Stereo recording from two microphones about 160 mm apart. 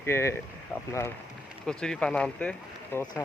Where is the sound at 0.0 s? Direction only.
15° left (ahead or behind).